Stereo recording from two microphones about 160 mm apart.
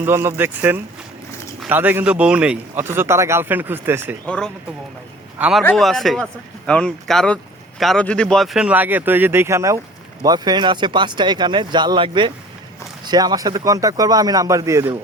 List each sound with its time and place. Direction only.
0.0 s a man's voice: 15° right (ahead or behind)
4.3 s a man's voice: 5° left (ahead or behind); by 14.9 s 20° right (ahead or behind)